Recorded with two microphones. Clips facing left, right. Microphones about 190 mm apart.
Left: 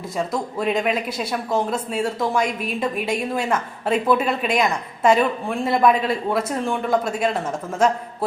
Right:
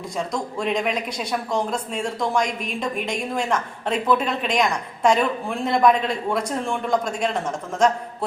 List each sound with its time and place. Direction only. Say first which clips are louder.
0.6 s a man's voice: left 2 dB; 5° left (ahead or behind)